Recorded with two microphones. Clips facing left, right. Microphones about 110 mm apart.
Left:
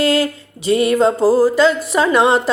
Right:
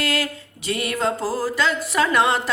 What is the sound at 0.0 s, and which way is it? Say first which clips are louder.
Music: left 9 dB; 25° left (ahead or behind).